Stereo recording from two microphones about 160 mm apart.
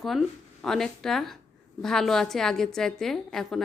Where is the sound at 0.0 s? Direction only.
Centre (ahead or behind).